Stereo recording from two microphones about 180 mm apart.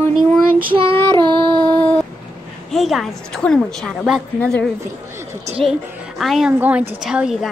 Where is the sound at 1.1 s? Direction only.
25° right (ahead or behind).